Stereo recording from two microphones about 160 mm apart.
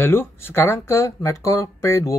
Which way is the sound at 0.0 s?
15° left (ahead or behind).